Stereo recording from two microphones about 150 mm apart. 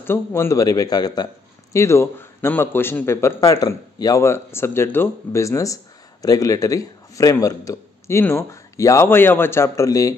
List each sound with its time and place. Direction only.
0.0 s speech: 15° left (ahead or behind)